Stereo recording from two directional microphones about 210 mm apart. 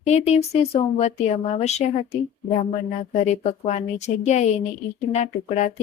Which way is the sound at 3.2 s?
35° left (ahead or behind).